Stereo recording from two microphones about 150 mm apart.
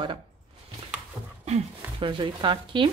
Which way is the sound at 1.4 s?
45° right (ahead or behind).